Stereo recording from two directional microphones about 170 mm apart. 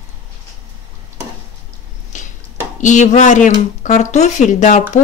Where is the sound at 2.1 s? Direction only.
45° left (ahead or behind).